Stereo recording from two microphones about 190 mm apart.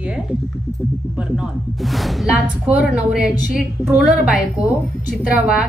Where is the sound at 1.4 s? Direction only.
Centre (ahead or behind).